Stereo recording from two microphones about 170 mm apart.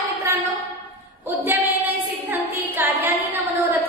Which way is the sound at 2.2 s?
10° right (ahead or behind).